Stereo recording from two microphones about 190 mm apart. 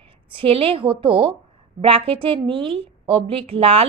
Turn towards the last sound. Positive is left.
turn(degrees=-30)  # may be behind; listen again after turning